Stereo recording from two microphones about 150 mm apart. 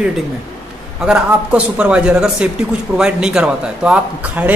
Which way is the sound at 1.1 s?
5° right (ahead or behind).